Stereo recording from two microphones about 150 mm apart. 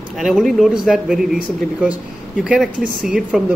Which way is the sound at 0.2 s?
Centre (ahead or behind).